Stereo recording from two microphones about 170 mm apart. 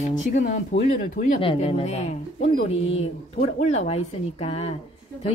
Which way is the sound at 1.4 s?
35° left (ahead or behind).